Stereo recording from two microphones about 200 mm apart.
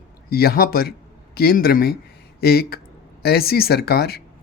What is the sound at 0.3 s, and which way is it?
Speech, 50° left (ahead or behind).